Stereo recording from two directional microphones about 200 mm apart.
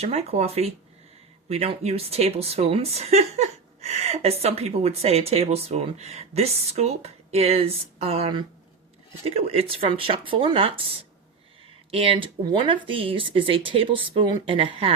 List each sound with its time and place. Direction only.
0.0 s a woman's voice: 30° right (ahead or behind)
11.9 s speech: 30° right (ahead or behind)